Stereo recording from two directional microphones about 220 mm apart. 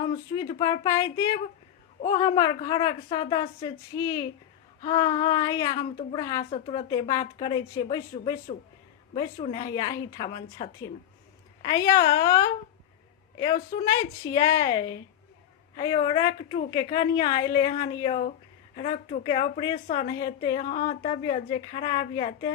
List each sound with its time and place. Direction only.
0.3 s a woman's voice: 20° left (ahead or behind)
9.4 s a woman's voice: 20° left (ahead or behind)
20.7 s a woman's voice: 35° left (ahead or behind); by 22.5 s 20° left (ahead or behind)